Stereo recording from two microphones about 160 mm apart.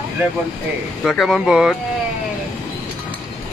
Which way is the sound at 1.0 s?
Centre (ahead or behind).